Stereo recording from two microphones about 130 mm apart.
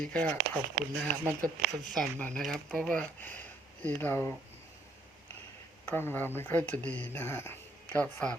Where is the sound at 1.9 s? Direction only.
5° left (ahead or behind).